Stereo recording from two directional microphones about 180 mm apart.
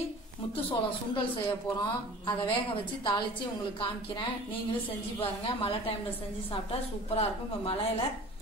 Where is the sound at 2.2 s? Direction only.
25° left (ahead or behind).